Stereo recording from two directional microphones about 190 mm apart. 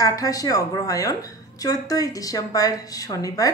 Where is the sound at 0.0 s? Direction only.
20° left (ahead or behind).